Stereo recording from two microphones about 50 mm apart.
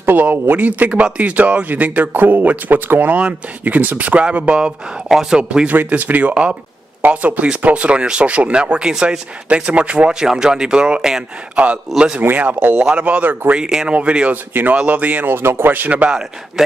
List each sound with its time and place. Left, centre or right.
0.0 s speech: right
5.0 s speech: centre
5.4 s speech: right
5.7 s speech: right; by 9.2 s centre
9.5 s speech: right
10.2 s speech: centre
11.5 s speech: right
13.6 s speech: centre
13.9 s speech: right
14.5 s speech: right
14.8 s speech: right
15.2 s speech: right
15.7 s speech: right
16.1 s speech: centre